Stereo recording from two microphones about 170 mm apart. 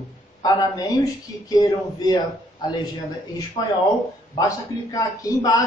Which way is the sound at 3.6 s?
20° left (ahead or behind).